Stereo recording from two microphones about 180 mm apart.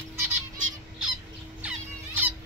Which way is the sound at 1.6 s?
10° right (ahead or behind).